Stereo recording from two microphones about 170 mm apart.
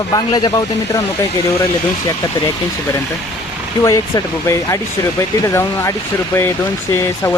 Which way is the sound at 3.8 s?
20° left (ahead or behind).